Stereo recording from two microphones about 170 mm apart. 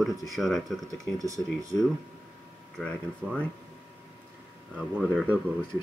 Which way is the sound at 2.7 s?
Centre (ahead or behind).